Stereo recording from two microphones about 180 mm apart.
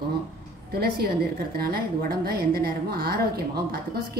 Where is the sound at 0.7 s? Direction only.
60° right (ahead or behind).